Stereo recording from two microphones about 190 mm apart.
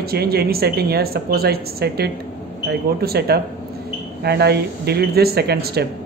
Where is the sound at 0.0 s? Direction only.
55° right (ahead or behind).